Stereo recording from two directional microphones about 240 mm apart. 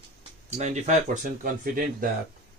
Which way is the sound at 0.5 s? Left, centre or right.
Right.